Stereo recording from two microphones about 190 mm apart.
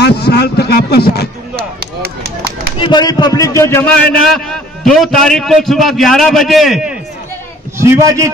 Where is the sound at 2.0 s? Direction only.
60° right (ahead or behind).